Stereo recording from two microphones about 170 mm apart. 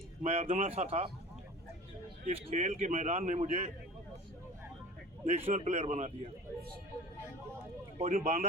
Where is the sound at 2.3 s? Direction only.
35° right (ahead or behind).